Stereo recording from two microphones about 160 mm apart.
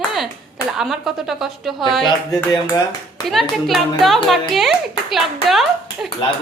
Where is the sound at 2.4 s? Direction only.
20° left (ahead or behind).